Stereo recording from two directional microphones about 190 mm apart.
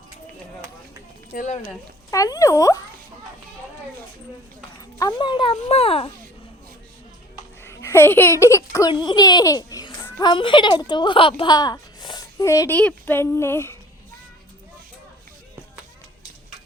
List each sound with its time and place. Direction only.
1.3 s speech: 40° left (ahead or behind)
1.6 s speech: 15° left (ahead or behind)
4.9 s a child's voice: 20° left (ahead or behind)
7.6 s speech: 15° left (ahead or behind)